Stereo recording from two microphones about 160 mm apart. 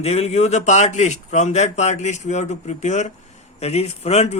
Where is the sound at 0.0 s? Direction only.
40° left (ahead or behind).